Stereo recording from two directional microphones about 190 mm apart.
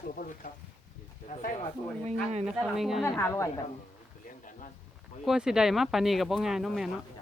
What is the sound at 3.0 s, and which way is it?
Speech, 15° left (ahead or behind).